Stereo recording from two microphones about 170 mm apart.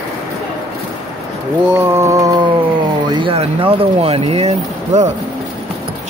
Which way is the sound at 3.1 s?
30° right (ahead or behind).